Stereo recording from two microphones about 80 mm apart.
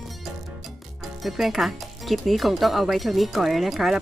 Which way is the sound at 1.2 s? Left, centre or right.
Centre.